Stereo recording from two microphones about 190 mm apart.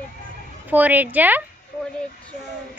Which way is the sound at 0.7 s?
10° right (ahead or behind).